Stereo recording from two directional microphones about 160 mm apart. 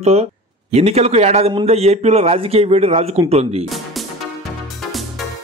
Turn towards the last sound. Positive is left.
turn(degrees=0)  # may be behind; listen again after turning